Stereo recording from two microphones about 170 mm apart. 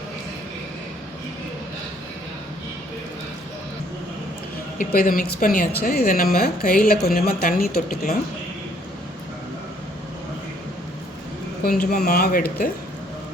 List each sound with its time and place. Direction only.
4.8 s speech: 55° left (ahead or behind)
11.6 s speech: 65° left (ahead or behind)